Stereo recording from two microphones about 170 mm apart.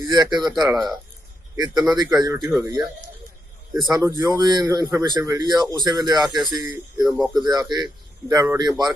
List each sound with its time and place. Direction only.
0.0 s speech: 25° right (ahead or behind)
4.4 s speech: 25° right (ahead or behind)
6.7 s speech: 5° right (ahead or behind)
7.4 s speech: 25° right (ahead or behind)